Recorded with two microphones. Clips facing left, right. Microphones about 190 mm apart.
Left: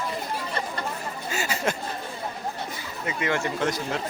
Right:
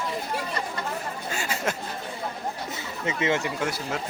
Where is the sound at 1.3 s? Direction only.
Centre (ahead or behind).